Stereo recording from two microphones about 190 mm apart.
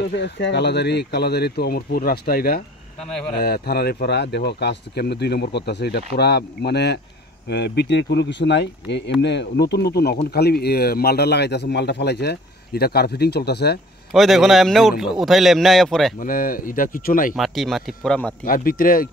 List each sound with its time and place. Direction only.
0.1 s speech: 65° left (ahead or behind)
14.1 s speech: centre (ahead or behind)
16.2 s speech: 45° left (ahead or behind)
17.4 s speech: centre (ahead or behind)
18.4 s speech: 50° left (ahead or behind)